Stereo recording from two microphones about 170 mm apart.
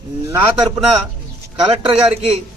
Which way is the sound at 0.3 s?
15° right (ahead or behind).